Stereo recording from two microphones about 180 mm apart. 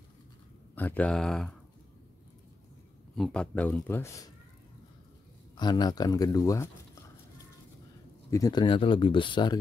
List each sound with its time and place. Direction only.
0.7 s speech: 10° left (ahead or behind)
3.2 s speech: 5° left (ahead or behind)
5.6 s speech: 25° left (ahead or behind)
8.3 s speech: 20° left (ahead or behind)